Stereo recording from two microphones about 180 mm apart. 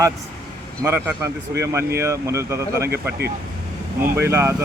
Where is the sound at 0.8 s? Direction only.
15° right (ahead or behind).